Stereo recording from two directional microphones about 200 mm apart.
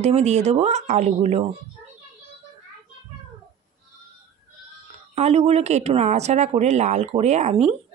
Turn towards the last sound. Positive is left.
turn(degrees=-30)  # may be behind; listen again after turning